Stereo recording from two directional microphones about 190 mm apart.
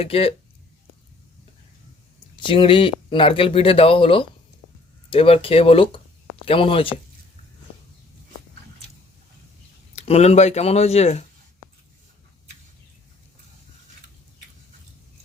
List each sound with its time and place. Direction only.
0.0 s speech: 30° left (ahead or behind)
2.4 s speech: 25° left (ahead or behind)
9.9 s speech: 35° left (ahead or behind)